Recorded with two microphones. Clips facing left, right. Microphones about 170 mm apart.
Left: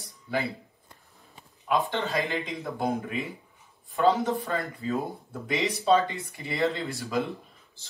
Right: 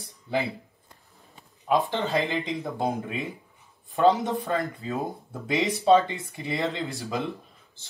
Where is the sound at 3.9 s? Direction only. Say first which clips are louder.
Right 2 dB; 20° right (ahead or behind).